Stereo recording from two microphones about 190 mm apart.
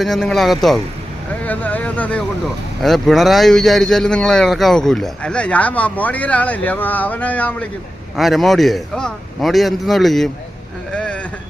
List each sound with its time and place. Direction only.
0.0 s speech: centre (ahead or behind)
10.9 s vehicle: 5° left (ahead or behind)